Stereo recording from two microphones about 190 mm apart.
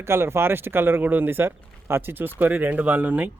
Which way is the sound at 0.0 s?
15° right (ahead or behind).